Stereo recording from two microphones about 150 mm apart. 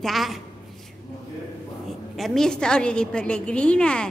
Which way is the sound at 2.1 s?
Centre (ahead or behind).